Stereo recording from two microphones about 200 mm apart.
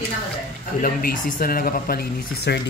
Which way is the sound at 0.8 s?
45° left (ahead or behind).